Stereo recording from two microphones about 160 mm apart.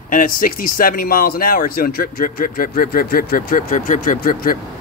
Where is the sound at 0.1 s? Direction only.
60° left (ahead or behind).